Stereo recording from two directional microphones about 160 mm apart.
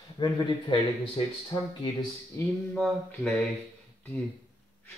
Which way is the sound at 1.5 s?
15° left (ahead or behind).